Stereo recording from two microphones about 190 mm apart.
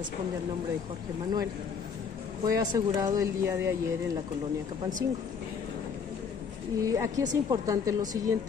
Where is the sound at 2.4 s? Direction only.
20° right (ahead or behind).